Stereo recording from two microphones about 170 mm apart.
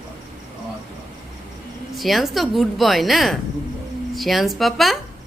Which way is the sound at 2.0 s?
Centre (ahead or behind).